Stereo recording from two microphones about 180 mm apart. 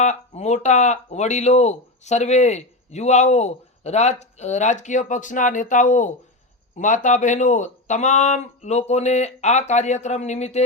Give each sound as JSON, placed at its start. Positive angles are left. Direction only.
{"t": 0.0, "sound": "speech", "side_deg": 40}